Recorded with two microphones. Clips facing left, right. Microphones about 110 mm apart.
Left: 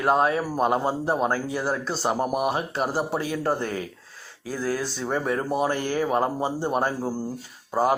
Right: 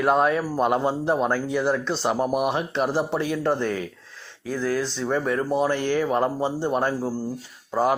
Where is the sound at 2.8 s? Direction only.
5° left (ahead or behind).